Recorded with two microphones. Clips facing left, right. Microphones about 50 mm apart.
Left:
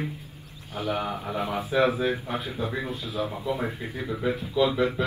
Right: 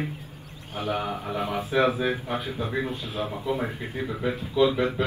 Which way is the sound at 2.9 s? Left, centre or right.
Right.